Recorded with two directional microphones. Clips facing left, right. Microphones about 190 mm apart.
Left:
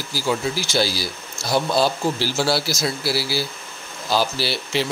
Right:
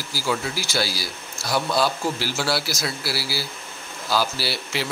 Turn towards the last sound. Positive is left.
turn(degrees=25)  # may be behind; listen again after turning